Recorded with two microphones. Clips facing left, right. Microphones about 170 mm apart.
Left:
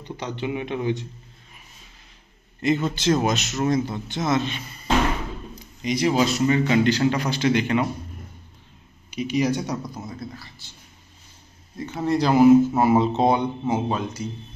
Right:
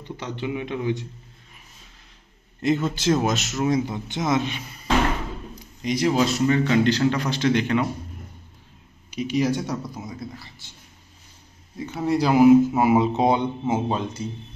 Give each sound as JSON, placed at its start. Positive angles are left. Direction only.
{"t": 0.2, "sound": "a man's voice", "side_deg": 20}
{"t": 2.6, "sound": "a man's voice", "side_deg": 0}
{"t": 5.8, "sound": "a man's voice", "side_deg": 0}
{"t": 9.1, "sound": "a man's voice", "side_deg": 0}
{"t": 10.0, "sound": "speech", "side_deg": -20}
{"t": 11.7, "sound": "a man's voice", "side_deg": -10}
{"t": 13.3, "sound": "speech", "side_deg": -20}